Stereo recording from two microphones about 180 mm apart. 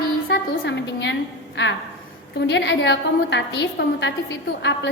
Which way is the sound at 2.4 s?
85° left.